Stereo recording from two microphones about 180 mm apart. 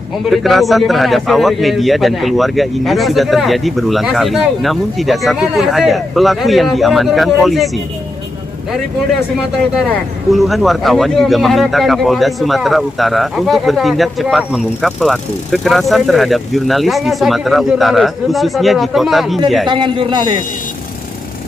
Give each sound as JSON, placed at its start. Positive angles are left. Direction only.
{"t": 0.3, "sound": "speech", "side_deg": 0}
{"t": 10.3, "sound": "speech", "side_deg": 0}
{"t": 19.6, "sound": "a man's voice", "side_deg": -25}